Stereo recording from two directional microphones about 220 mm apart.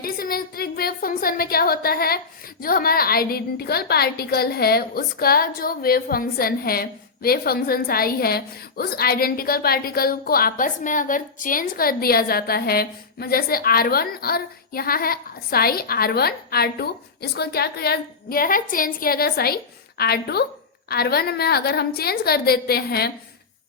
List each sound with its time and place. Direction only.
0.0 s a woman's voice: 40° left (ahead or behind)